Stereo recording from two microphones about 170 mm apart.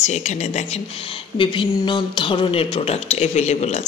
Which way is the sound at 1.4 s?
30° left (ahead or behind).